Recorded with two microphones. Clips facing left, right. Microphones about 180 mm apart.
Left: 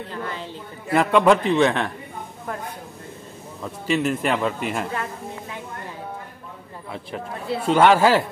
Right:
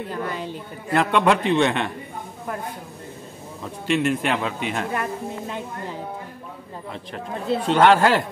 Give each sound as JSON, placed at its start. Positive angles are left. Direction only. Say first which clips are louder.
{"t": 0.1, "sound": "a woman's voice", "louder": "right 3 dB", "side_deg": -15}
{"t": 0.9, "sound": "a man's voice", "louder": "left 2 dB", "side_deg": 0}
{"t": 3.6, "sound": "a man's voice", "louder": "right 1 dB", "side_deg": 0}
{"t": 7.5, "sound": "speech", "louder": "even", "side_deg": 10}